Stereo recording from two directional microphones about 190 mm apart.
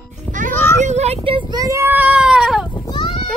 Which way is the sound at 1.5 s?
20° right (ahead or behind).